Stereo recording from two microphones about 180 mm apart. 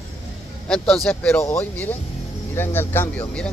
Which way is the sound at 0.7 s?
5° left (ahead or behind).